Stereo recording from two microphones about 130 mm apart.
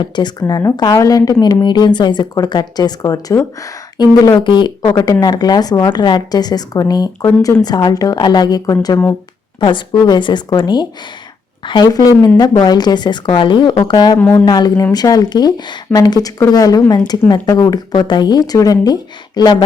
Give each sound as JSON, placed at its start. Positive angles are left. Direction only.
{"t": 0.0, "sound": "a woman's voice", "side_deg": 35}